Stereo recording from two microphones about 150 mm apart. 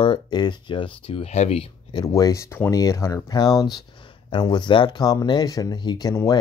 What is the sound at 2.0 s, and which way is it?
Speech, 25° left (ahead or behind).